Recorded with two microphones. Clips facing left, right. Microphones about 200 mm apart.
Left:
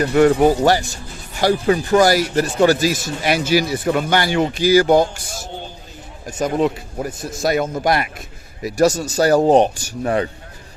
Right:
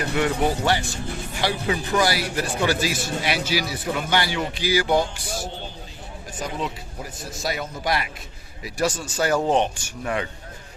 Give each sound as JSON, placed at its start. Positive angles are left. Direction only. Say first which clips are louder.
{"t": 0.1, "sound": "a man's voice", "louder": "left 10 dB", "side_deg": 45}